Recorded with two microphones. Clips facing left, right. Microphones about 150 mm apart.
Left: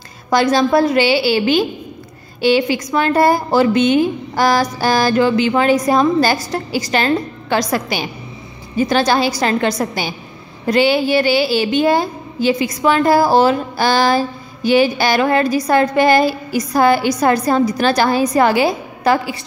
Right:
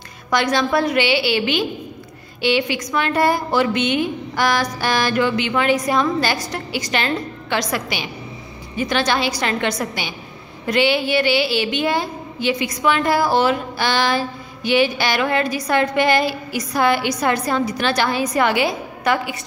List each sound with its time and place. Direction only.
0.3 s a woman's voice: 35° left (ahead or behind)